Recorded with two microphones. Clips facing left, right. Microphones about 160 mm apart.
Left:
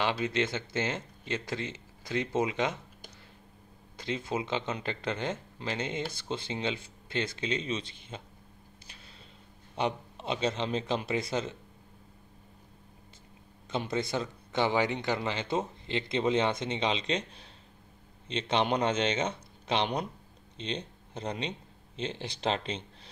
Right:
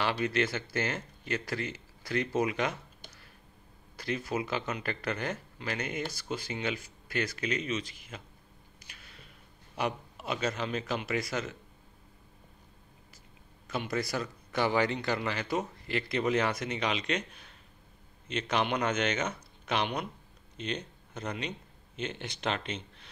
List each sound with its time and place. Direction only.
0.0 s speech: 20° left (ahead or behind)
3.9 s speech: 20° left (ahead or behind)
8.8 s a sound: 30° left (ahead or behind)
9.8 s speech: 25° left (ahead or behind)
13.7 s speech: 25° left (ahead or behind)